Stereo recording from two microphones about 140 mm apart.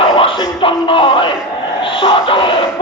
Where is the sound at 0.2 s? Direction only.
40° left (ahead or behind).